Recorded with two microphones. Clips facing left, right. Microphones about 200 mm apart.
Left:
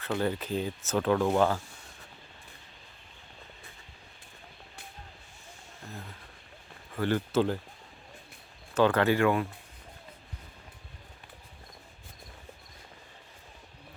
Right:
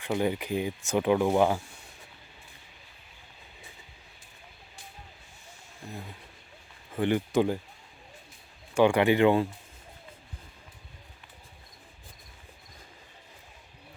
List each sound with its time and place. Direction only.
0.0 s speech: 15° right (ahead or behind)
5.9 s speech: 15° right (ahead or behind)
8.7 s speech: 15° right (ahead or behind)